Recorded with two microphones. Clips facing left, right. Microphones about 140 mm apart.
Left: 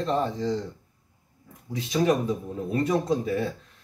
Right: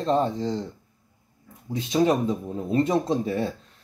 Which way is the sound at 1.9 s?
25° right (ahead or behind).